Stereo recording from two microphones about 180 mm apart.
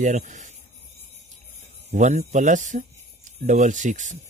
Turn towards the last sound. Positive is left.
turn(degrees=-45)  # may be behind; listen again after turning